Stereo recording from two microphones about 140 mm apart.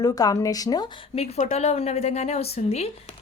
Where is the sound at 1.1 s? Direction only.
55° left (ahead or behind).